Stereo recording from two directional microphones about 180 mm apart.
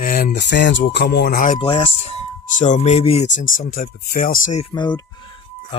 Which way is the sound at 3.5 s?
50° left (ahead or behind).